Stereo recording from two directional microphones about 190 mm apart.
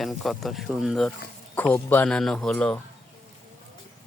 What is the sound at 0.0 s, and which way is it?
Speech, centre (ahead or behind).